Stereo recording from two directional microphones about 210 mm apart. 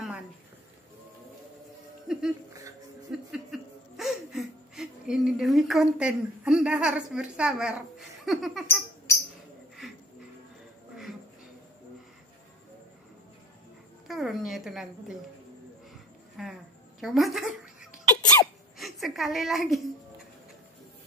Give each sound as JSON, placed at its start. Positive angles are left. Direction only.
{"t": 2.1, "sound": "speech", "side_deg": 0}
{"t": 3.1, "sound": "laughter", "side_deg": 0}
{"t": 8.6, "sound": "a sound", "side_deg": 15}
{"t": 14.0, "sound": "speech", "side_deg": 0}
{"t": 16.4, "sound": "speech", "side_deg": 0}
{"t": 17.0, "sound": "a sound", "side_deg": 0}
{"t": 18.2, "sound": "sneeze", "side_deg": 15}
{"t": 18.8, "sound": "a woman's voice", "side_deg": 0}